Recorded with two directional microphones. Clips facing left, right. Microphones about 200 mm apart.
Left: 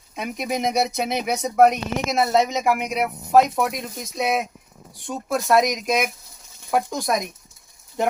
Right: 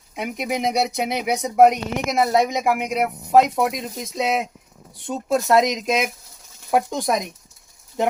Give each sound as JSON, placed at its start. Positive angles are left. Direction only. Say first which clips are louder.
{"t": 0.2, "sound": "speech", "louder": "right 1 dB", "side_deg": -15}